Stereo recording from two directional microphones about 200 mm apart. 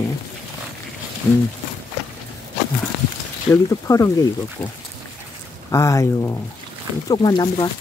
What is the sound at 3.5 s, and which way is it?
Speech, 15° left (ahead or behind).